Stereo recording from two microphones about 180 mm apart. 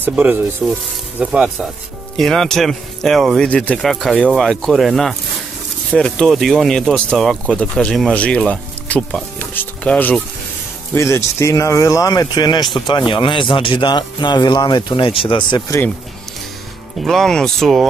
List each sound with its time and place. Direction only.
0.0 s rub: 10° right (ahead or behind)
1.2 s speech: 5° right (ahead or behind); by 15.6 s 30° left (ahead or behind)
17.0 s speech: centre (ahead or behind)